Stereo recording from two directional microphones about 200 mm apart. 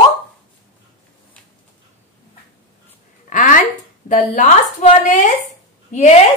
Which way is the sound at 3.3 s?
40° left (ahead or behind).